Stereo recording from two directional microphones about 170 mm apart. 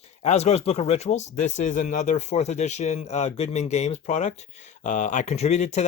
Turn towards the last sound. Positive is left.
turn(degrees=40)  # may be behind; listen again after turning